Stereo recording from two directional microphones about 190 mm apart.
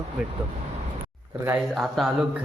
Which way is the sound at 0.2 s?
5° right (ahead or behind).